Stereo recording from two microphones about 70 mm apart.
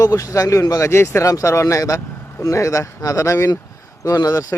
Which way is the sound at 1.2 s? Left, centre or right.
Left.